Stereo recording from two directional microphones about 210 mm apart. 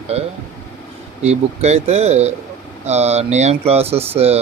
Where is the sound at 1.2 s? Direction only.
30° right (ahead or behind).